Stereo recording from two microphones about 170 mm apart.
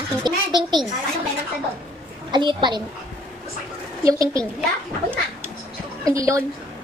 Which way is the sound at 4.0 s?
20° right (ahead or behind).